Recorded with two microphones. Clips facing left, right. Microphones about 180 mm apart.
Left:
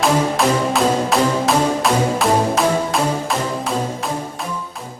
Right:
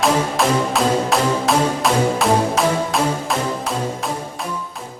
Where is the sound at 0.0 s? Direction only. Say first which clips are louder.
Left 1 dB; centre (ahead or behind).